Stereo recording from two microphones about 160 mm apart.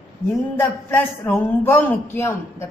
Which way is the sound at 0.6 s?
10° left (ahead or behind).